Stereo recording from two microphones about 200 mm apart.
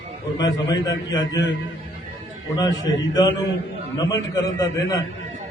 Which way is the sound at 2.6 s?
20° left (ahead or behind).